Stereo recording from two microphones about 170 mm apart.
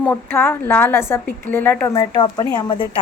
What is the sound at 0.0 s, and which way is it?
A woman's voice, 10° left (ahead or behind).